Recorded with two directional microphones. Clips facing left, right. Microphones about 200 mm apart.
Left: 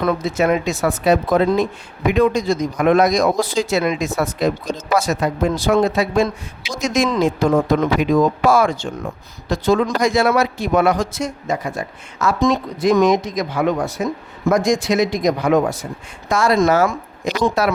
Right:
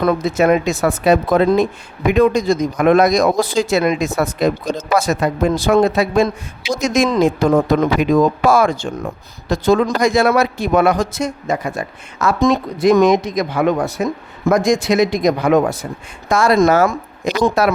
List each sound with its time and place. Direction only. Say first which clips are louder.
0.0 s speech: right 3 dB; 50° right (ahead or behind)
2.1 s speech: right 3 dB; 45° right (ahead or behind); by 15.8 s 60° right (ahead or behind)
16.3 s speech: right 3 dB; 50° right (ahead or behind)